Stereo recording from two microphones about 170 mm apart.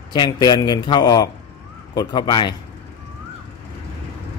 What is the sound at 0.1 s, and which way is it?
Speech, 25° left (ahead or behind).